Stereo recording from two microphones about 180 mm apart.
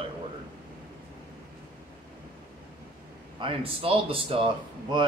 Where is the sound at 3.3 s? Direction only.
30° right (ahead or behind).